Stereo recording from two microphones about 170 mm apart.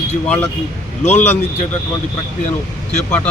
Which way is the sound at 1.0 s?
40° left (ahead or behind).